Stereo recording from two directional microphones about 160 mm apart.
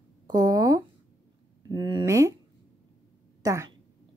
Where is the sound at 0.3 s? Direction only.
25° right (ahead or behind).